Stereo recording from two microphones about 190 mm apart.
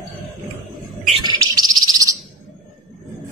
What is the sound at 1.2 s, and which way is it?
Bird, 20° right (ahead or behind).